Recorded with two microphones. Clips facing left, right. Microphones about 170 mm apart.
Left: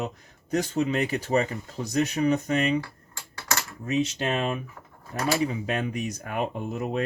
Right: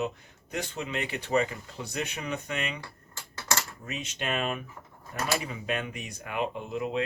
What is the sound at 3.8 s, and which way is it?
Speech, 35° left (ahead or behind).